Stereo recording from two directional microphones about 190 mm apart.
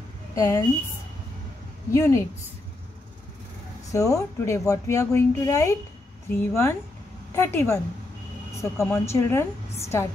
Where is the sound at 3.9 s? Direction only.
15° left (ahead or behind).